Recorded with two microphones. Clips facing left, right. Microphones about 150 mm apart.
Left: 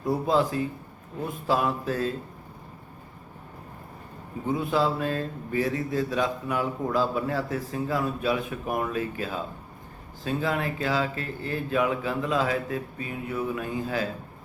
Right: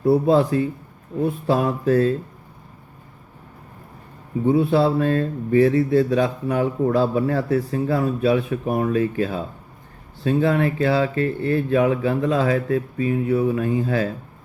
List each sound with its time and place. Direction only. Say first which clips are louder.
0.0 s speech: right 7 dB; 35° right (ahead or behind)
4.4 s speech: right 8 dB; 35° right (ahead or behind)